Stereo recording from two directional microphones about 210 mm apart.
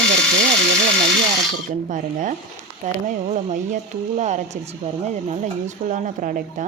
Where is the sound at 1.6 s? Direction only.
40° right (ahead or behind).